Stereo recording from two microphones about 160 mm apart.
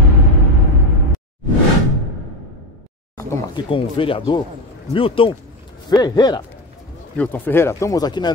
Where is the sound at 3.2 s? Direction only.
20° left (ahead or behind).